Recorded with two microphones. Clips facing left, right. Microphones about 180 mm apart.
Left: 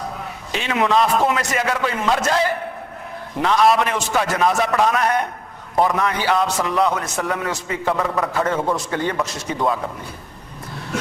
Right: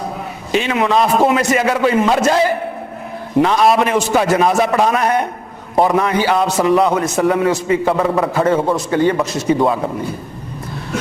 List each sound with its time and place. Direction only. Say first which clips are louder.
0.5 s a man's voice: right 4 dB; 10° right (ahead or behind)
7.9 s a man's voice: right 6 dB; 25° right (ahead or behind)
8.8 s a man's voice: right 8 dB; 10° right (ahead or behind)
9.6 s a man's voice: right 6 dB; 25° right (ahead or behind)